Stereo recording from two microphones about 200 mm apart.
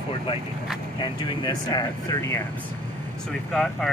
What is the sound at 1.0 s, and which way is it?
Speech, 20° left (ahead or behind).